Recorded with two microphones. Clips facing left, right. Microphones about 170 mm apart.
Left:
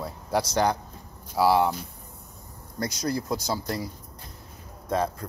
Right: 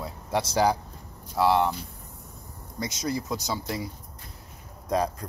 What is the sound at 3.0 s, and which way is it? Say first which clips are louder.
Speech: left 1 dB; centre (ahead or behind).